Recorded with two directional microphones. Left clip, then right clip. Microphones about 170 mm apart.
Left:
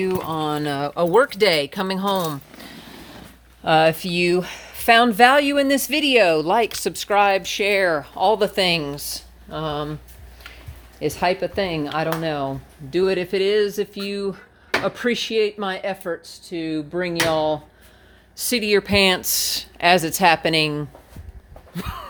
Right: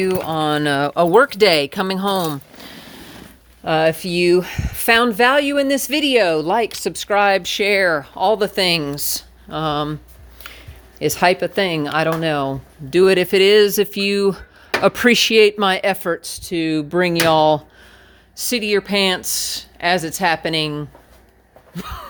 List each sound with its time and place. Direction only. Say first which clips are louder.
0.2 s speech: right 5 dB; 45° right (ahead or behind); by 2.9 s 30° right (ahead or behind)
3.6 s speech: even; 10° right (ahead or behind)
5.0 s speech: even; 5° right (ahead or behind)
7.2 s speech: right 2 dB; 30° right (ahead or behind)
11.0 s speech: right 5 dB; 45° right (ahead or behind); by 17.6 s 65° right (ahead or behind)
18.3 s a woman's voice: right 1 dB; 10° right (ahead or behind)